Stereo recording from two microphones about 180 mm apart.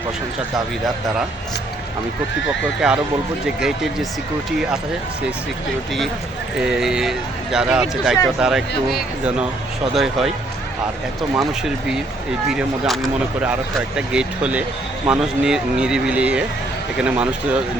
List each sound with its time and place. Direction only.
2.8 s speech: 5° right (ahead or behind)
6.6 s speech: 5° right (ahead or behind)
9.9 s speech: centre (ahead or behind)
11.3 s speech: centre (ahead or behind)